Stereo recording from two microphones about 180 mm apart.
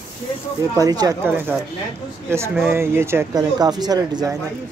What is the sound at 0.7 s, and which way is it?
Speech, 20° right (ahead or behind).